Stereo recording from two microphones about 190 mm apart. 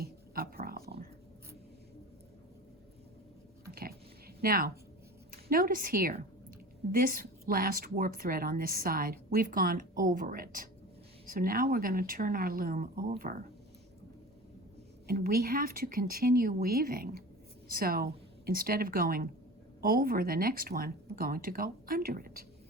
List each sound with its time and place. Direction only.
0.0 s a sound: 50° right (ahead or behind)
3.7 s dog: 50° right (ahead or behind)
4.4 s a woman's voice: 50° right (ahead or behind)
15.0 s a woman's voice: 50° right (ahead or behind)